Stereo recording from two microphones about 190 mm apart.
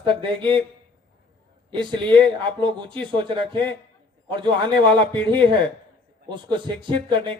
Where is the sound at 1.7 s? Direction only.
25° right (ahead or behind).